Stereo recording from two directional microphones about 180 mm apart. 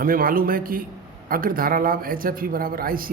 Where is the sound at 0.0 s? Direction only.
50° right (ahead or behind).